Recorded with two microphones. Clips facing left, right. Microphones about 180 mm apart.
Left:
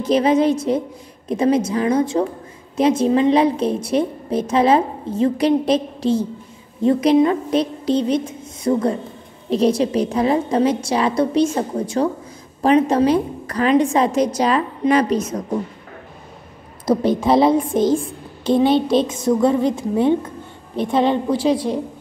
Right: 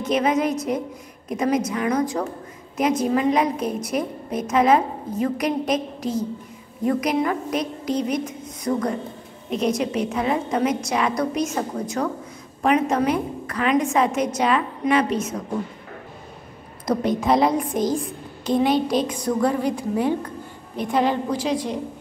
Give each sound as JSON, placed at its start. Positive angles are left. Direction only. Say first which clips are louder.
{"t": 0.0, "sound": "a woman's voice", "louder": "left 5 dB", "side_deg": 30}
{"t": 16.8, "sound": "a woman's voice", "louder": "left 4 dB", "side_deg": 30}